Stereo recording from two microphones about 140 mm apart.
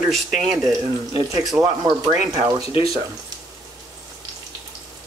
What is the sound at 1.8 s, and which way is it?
Speech, 25° right (ahead or behind).